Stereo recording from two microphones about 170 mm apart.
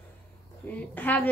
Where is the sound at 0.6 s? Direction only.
10° left (ahead or behind).